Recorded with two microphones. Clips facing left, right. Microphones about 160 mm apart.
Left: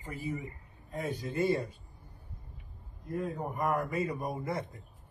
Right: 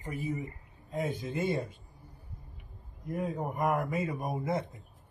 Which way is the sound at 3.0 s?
20° right (ahead or behind).